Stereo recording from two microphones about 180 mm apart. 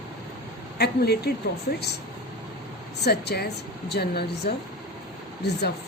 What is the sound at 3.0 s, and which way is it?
Speech, 65° left (ahead or behind).